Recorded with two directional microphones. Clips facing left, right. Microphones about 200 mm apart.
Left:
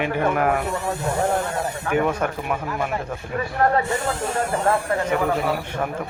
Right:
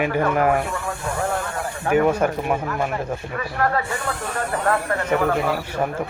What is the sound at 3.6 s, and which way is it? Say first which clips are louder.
Speech: left 3 dB; 25° left (ahead or behind).